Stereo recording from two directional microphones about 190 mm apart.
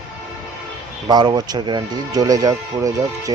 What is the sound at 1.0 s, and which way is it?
Speech, 20° right (ahead or behind).